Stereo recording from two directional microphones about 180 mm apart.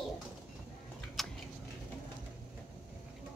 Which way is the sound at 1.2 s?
Centre (ahead or behind).